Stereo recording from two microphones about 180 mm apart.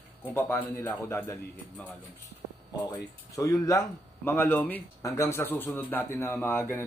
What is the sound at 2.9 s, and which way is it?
Speech, 15° left (ahead or behind).